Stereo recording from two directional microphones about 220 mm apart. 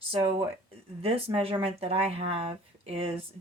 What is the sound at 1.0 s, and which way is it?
Speech, 25° right (ahead or behind).